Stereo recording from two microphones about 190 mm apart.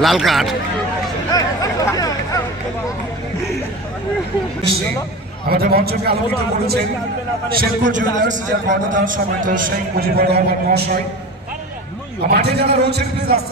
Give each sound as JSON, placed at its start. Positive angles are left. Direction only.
{"t": 0.0, "sound": "speech", "side_deg": 0}
{"t": 1.3, "sound": "a sound", "side_deg": 20}
{"t": 5.5, "sound": "a man's voice", "side_deg": -55}
{"t": 7.5, "sound": "a man's voice", "side_deg": -45}
{"t": 12.3, "sound": "a man's voice", "side_deg": -60}